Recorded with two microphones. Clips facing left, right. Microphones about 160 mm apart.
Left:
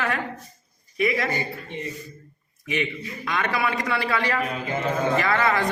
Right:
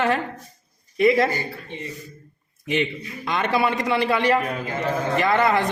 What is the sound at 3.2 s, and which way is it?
A man's voice, 25° right (ahead or behind).